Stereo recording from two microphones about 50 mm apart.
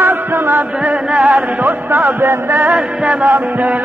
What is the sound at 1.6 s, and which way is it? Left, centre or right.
Music, right.